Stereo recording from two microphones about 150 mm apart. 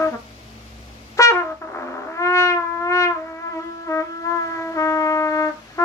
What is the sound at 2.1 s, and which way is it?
Wind instrument, 20° left (ahead or behind).